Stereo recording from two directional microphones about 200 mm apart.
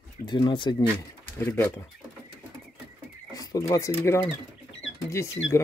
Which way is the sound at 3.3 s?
20° left (ahead or behind).